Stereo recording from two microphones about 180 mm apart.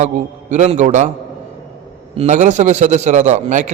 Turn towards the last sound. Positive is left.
turn(degrees=-40)  # may be behind; listen again after turning